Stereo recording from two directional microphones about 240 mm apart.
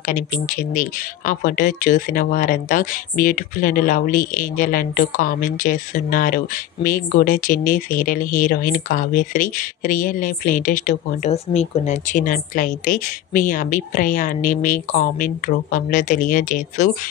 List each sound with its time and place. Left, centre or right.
0.0 s speech: left